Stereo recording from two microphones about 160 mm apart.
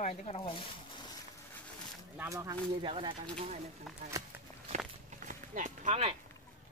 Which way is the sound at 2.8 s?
30° right (ahead or behind).